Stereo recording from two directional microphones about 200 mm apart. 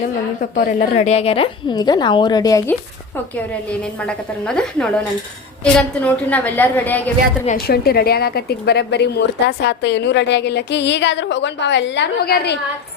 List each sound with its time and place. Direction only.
0.5 s a woman's voice: 40° left (ahead or behind); by 2.7 s 15° left (ahead or behind)
3.3 s a woman's voice: 5° left (ahead or behind)
7.4 s a woman's voice: 50° left (ahead or behind)